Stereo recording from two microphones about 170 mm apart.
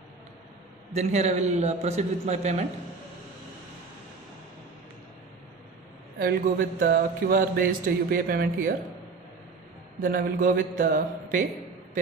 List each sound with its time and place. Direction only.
0.9 s a man's voice: 40° right (ahead or behind)
6.1 s a sound: 55° right (ahead or behind)
9.9 s a man's voice: 55° right (ahead or behind)